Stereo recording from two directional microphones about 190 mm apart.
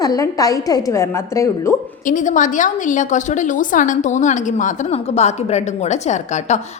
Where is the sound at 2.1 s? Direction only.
40° left (ahead or behind).